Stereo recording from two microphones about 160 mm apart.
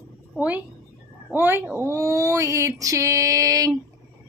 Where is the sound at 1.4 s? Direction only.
15° right (ahead or behind).